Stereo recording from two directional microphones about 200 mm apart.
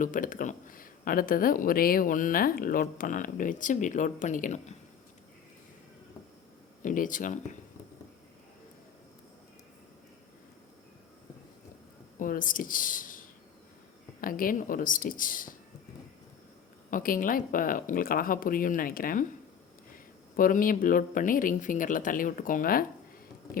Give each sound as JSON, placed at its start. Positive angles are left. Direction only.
{"t": 0.0, "sound": "speech", "side_deg": 40}
{"t": 6.8, "sound": "speech", "side_deg": 40}
{"t": 12.2, "sound": "speech", "side_deg": 45}
{"t": 16.9, "sound": "speech", "side_deg": 45}
{"t": 20.3, "sound": "speech", "side_deg": 45}